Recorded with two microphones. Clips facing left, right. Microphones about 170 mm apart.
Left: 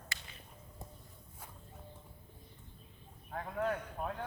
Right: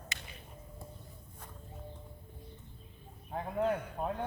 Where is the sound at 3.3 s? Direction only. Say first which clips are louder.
Right 4 dB; 25° right (ahead or behind).